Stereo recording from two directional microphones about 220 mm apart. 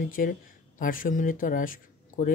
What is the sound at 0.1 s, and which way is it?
Speech, 40° left (ahead or behind).